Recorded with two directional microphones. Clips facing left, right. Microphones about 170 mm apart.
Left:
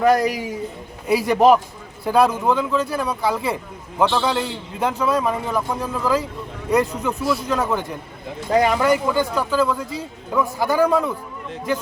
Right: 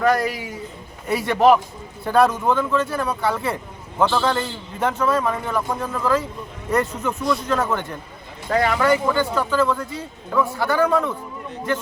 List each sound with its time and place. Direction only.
0.0 s speech: 15° left (ahead or behind)